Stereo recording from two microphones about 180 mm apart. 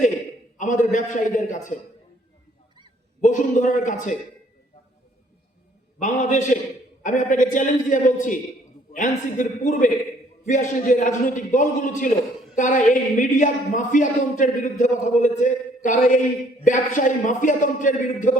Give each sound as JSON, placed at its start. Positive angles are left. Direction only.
{"t": 0.6, "sound": "speech", "side_deg": 45}
{"t": 3.2, "sound": "speech", "side_deg": 45}
{"t": 6.0, "sound": "speech", "side_deg": 45}